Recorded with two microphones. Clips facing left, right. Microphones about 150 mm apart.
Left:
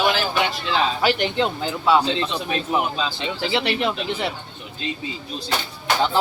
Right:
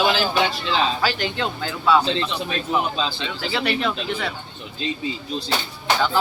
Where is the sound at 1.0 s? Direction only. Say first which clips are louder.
Left 3 dB; 20° left (ahead or behind).